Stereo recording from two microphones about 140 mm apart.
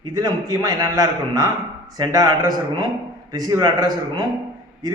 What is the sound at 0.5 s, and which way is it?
A man's voice, 25° right (ahead or behind).